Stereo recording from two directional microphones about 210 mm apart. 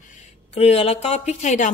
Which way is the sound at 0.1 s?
35° left (ahead or behind).